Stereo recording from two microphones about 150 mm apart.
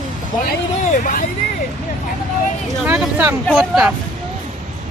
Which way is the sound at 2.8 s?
10° right (ahead or behind).